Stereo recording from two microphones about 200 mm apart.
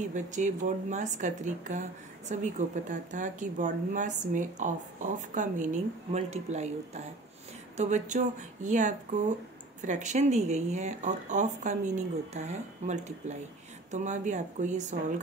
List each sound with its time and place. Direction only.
0.1 s a woman's voice: 40° right (ahead or behind)
7.7 s a woman's voice: 35° right (ahead or behind)